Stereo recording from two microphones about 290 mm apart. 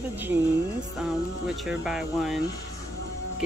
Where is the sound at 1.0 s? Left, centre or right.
Centre.